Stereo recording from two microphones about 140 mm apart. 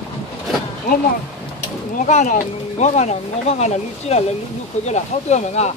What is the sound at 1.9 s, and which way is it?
Speech, 60° left (ahead or behind).